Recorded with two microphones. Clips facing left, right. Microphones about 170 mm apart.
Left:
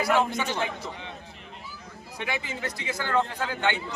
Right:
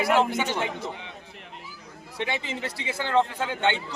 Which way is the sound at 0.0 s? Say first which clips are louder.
Right 2 dB; 20° right (ahead or behind).